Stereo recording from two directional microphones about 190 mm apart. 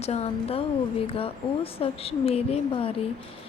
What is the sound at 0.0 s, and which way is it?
Speech, 35° left (ahead or behind).